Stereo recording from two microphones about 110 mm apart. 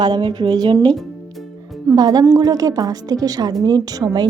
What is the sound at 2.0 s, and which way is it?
A woman's voice, 35° right (ahead or behind).